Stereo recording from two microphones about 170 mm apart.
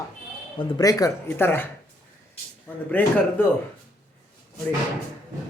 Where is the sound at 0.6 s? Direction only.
20° left (ahead or behind).